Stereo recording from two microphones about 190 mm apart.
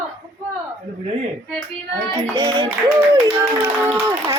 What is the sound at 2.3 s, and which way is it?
Hands, 25° right (ahead or behind).